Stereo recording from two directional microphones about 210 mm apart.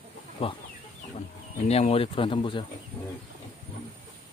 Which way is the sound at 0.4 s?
25° left (ahead or behind).